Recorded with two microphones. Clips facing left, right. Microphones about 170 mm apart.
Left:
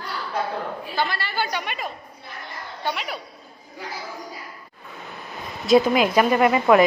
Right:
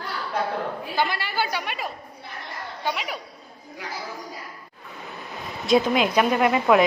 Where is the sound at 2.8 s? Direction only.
5° right (ahead or behind).